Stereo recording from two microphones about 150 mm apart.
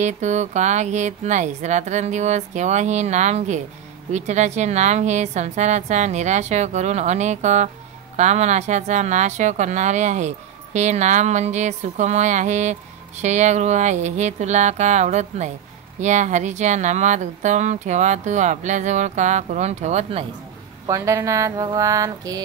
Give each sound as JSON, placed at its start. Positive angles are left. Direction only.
{"t": 0.0, "sound": "a woman's voice", "side_deg": -50}
{"t": 20.8, "sound": "speech", "side_deg": -20}